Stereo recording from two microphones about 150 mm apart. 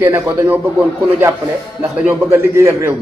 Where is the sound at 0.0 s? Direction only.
15° right (ahead or behind).